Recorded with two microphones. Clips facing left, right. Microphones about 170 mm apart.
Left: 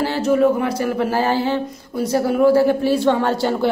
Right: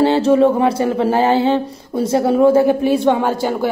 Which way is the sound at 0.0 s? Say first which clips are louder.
Right 4 dB; 25° right (ahead or behind).